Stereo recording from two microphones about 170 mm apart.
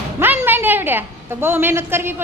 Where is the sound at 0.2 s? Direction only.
10° right (ahead or behind).